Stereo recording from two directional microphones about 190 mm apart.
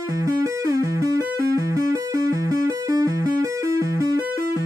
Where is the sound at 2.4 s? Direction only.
20° right (ahead or behind).